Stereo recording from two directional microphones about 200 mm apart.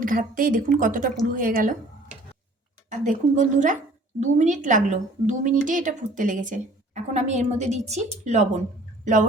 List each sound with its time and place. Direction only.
0.0 s a woman's voice: 45° right (ahead or behind)
3.0 s a woman's voice: 40° right (ahead or behind)